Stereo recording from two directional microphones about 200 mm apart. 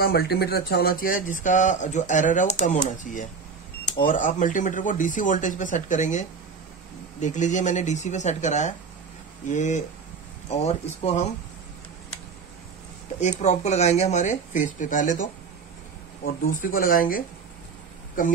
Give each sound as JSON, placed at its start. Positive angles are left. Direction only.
{"t": 0.0, "sound": "speech", "side_deg": 50}
{"t": 13.2, "sound": "speech", "side_deg": 35}
{"t": 16.4, "sound": "speech", "side_deg": 45}